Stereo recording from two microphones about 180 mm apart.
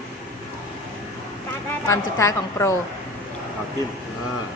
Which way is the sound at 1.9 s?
15° left (ahead or behind).